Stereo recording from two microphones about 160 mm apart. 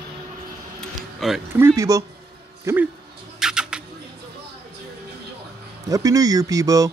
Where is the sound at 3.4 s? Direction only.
5° right (ahead or behind).